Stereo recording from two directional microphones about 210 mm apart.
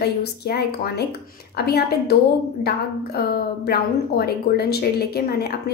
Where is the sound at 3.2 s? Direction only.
45° left (ahead or behind).